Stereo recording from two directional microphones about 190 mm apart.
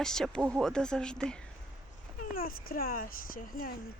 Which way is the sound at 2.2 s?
50° left (ahead or behind).